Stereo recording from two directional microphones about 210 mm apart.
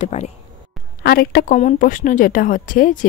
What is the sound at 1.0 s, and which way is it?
Speech, 50° left (ahead or behind).